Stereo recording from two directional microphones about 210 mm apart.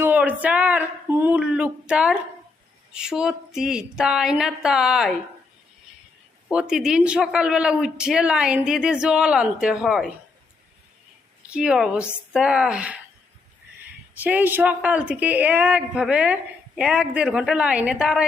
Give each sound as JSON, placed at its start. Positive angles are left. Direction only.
{"t": 0.0, "sound": "a sound", "side_deg": -10}
{"t": 2.9, "sound": "speech", "side_deg": -5}
{"t": 6.5, "sound": "speech", "side_deg": -5}
{"t": 11.4, "sound": "speech", "side_deg": -5}
{"t": 14.2, "sound": "speech", "side_deg": -10}